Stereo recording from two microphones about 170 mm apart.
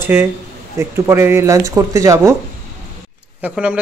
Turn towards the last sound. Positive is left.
turn(degrees=-5)  # may be behind; listen again after turning